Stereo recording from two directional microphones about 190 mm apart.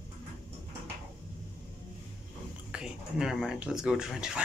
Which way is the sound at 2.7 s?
5° right (ahead or behind).